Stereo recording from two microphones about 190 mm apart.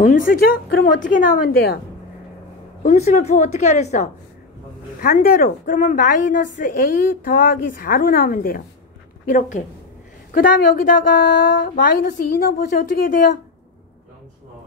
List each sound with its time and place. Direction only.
0.0 s a woman's voice: 45° left (ahead or behind)
2.8 s a woman's voice: 40° left (ahead or behind)
5.0 s a woman's voice: 50° left (ahead or behind)
10.3 s a woman's voice: 45° left (ahead or behind)